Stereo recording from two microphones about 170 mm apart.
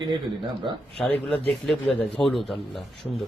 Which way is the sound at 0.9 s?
5° left (ahead or behind).